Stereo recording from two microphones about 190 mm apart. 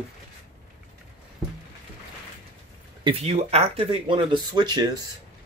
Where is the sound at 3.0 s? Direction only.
30° right (ahead or behind).